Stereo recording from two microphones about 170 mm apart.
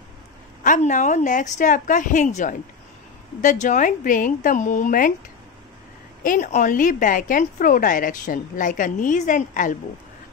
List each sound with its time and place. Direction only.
0.7 s a woman's voice: 45° left (ahead or behind)
6.2 s a woman's voice: 45° left (ahead or behind)